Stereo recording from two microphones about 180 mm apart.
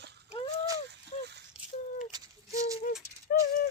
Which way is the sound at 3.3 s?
60° left (ahead or behind).